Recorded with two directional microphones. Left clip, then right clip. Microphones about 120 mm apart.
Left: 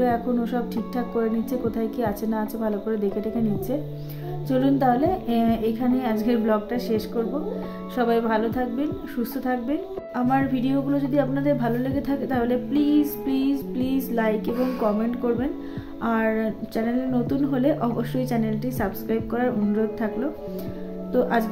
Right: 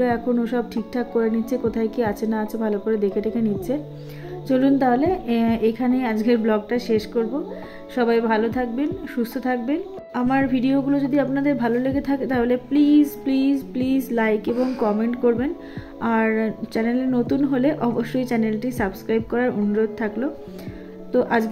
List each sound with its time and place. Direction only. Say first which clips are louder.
0.0 s a woman's voice: right 2 dB; 25° right (ahead or behind)